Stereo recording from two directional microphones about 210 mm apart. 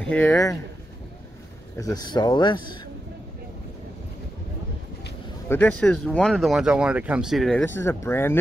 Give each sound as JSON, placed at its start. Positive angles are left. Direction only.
{"t": 0.0, "sound": "speech", "side_deg": 5}
{"t": 1.8, "sound": "speech", "side_deg": 15}
{"t": 5.5, "sound": "speech", "side_deg": 5}